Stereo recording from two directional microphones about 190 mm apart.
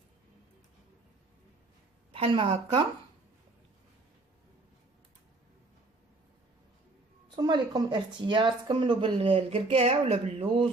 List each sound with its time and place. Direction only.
2.1 s speech: 30° right (ahead or behind)
7.3 s speech: 20° right (ahead or behind)